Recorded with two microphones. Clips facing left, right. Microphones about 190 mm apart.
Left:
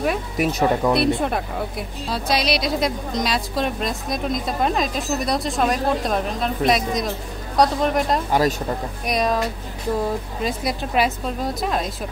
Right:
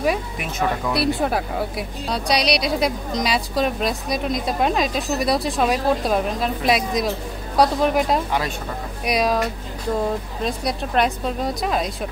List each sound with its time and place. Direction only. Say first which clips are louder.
0.4 s speech: left 5 dB; 40° left (ahead or behind)
0.9 s a woman's voice: left 1 dB; centre (ahead or behind)
8.3 s speech: left 5 dB; 40° left (ahead or behind)
9.0 s a woman's voice: right 2 dB; centre (ahead or behind)
10.4 s a woman's voice: even; centre (ahead or behind)